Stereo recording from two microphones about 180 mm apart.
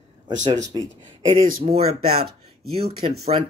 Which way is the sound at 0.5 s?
20° right (ahead or behind).